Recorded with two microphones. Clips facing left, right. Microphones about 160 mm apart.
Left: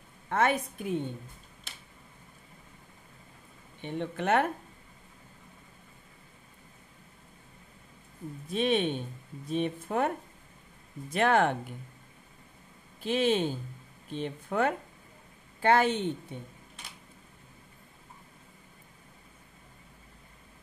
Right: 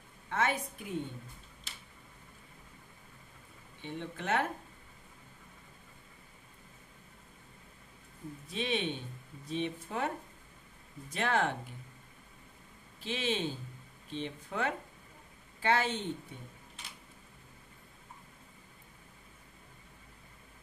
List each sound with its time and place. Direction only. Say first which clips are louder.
0.3 s a woman's voice: left 5 dB; 55° left (ahead or behind)
3.8 s speech: left 7 dB; 60° left (ahead or behind)
8.5 s speech: left 7 dB; 50° left (ahead or behind)
13.0 s speech: left 8 dB; 50° left (ahead or behind)